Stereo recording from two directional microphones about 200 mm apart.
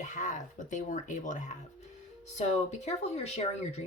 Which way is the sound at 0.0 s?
40° left (ahead or behind).